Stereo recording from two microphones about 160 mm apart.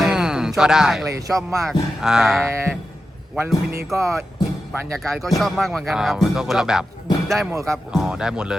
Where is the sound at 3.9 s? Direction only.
20° right (ahead or behind).